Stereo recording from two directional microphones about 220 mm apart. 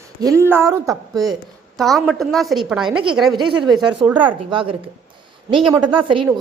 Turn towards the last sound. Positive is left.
turn(degrees=-25)  # may be behind; listen again after turning